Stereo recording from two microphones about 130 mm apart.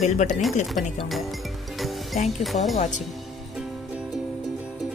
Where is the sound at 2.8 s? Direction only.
65° left (ahead or behind).